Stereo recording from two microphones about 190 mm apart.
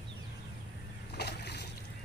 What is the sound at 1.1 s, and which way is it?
Boat, 60° left (ahead or behind).